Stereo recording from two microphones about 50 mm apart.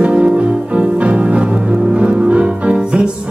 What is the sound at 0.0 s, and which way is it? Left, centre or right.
Music, right.